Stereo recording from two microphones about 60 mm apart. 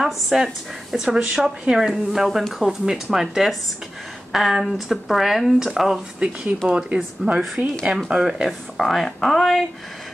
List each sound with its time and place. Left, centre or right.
0.0 s speech: centre
8.1 s speech: centre